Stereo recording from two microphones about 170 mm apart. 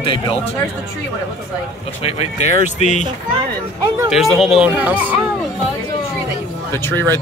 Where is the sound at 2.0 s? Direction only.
40° left (ahead or behind).